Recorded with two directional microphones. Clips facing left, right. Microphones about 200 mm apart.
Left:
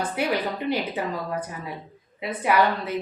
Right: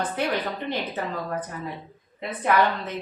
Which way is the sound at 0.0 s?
10° left (ahead or behind).